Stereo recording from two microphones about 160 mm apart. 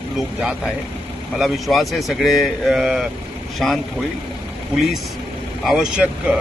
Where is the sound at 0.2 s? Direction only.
5° right (ahead or behind).